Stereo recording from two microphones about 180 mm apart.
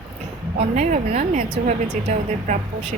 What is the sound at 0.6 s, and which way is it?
Speech, 40° right (ahead or behind).